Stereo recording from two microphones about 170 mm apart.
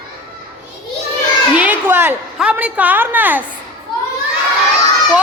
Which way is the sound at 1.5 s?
10° right (ahead or behind).